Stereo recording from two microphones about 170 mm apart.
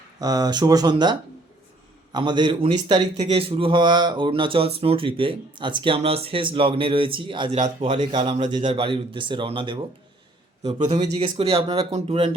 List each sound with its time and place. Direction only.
0.2 s speech: 20° right (ahead or behind)
2.1 s speech: 25° right (ahead or behind)
3.2 s speech: 35° right (ahead or behind)
10.6 s speech: 40° right (ahead or behind)